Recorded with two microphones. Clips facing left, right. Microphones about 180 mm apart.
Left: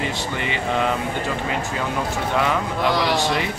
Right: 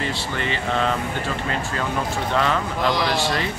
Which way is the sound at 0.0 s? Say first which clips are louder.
Left 1 dB; 15° left (ahead or behind).